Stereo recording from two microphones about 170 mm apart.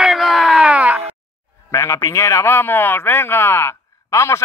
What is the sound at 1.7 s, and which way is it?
Speech, 15° left (ahead or behind).